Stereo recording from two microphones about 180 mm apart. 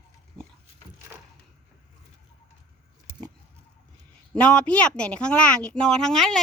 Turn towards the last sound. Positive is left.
turn(degrees=0)  # may be behind; listen again after turning